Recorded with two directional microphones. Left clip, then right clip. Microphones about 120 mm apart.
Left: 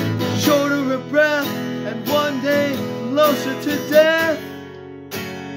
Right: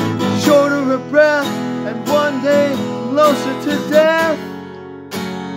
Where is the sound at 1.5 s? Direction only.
50° right (ahead or behind).